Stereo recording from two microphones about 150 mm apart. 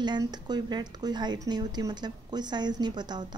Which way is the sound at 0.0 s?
30° right (ahead or behind).